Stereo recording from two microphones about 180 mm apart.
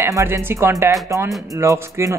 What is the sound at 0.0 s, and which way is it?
Speech, 15° right (ahead or behind).